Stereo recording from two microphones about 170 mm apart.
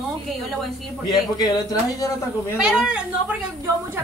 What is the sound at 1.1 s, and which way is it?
Speech, 25° left (ahead or behind).